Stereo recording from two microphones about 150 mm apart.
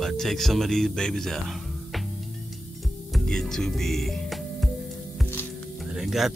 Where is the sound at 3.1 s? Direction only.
5° left (ahead or behind).